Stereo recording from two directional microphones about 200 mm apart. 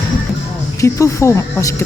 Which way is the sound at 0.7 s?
15° left (ahead or behind).